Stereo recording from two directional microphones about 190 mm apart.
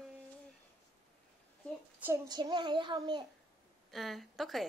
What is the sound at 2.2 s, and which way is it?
A child's voice, 20° right (ahead or behind).